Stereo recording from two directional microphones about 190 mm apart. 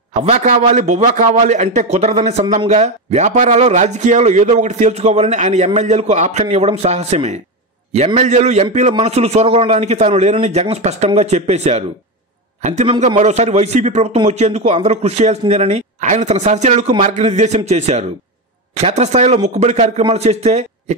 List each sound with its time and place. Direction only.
0.1 s a man's voice: 35° right (ahead or behind)